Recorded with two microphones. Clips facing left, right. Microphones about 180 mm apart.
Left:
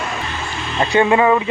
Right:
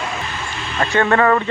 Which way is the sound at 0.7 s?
15° left (ahead or behind).